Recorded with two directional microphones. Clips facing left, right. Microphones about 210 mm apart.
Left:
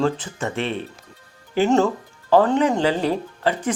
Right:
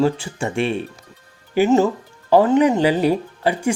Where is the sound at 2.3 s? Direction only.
15° right (ahead or behind).